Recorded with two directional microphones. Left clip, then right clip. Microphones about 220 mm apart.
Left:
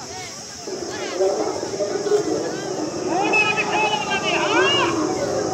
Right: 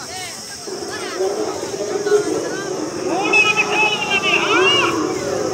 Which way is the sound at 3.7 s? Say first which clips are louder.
Right 4 dB; 50° right (ahead or behind).